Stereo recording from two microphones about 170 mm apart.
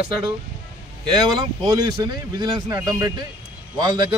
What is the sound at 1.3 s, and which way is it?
Speech, 25° right (ahead or behind).